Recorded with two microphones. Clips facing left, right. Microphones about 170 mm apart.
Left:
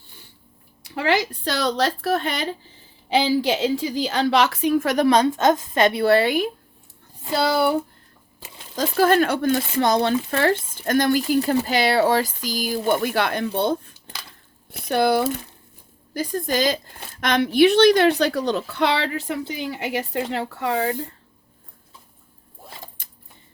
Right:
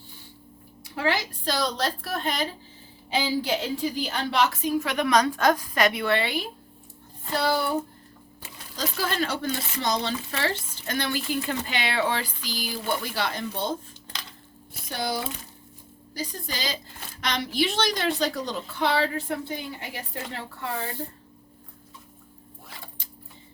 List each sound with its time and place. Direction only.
0.9 s a woman's voice: 75° left (ahead or behind)
3.1 s a woman's voice: 90° left; by 4.9 s 65° left (ahead or behind)
4.9 s a woman's voice: 35° left (ahead or behind)
7.3 s a woman's voice: 90° left
8.7 s a woman's voice: 50° left (ahead or behind); by 20.9 s 80° left